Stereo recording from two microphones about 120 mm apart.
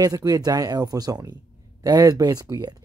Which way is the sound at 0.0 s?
30° right (ahead or behind).